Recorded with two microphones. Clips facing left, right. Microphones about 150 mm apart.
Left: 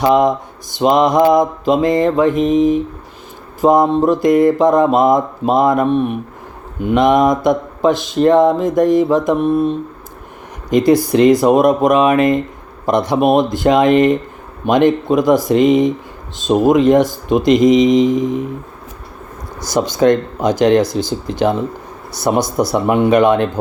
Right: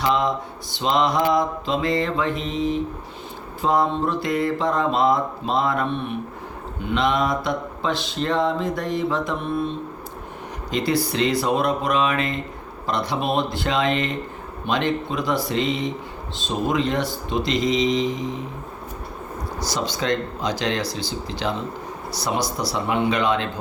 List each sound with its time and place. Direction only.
0.0 s speech: 45° left (ahead or behind)
10.7 s speech: 45° left (ahead or behind)
19.6 s speech: 50° left (ahead or behind)